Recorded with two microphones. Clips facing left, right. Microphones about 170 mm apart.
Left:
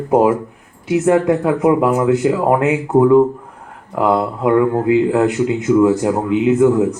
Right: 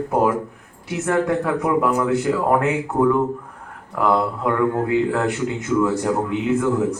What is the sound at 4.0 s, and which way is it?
Speech, 10° left (ahead or behind).